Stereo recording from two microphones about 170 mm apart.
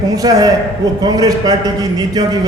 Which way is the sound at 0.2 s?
20° right (ahead or behind).